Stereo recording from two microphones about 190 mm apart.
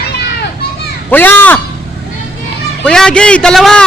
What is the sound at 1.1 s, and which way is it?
Speech, 10° left (ahead or behind).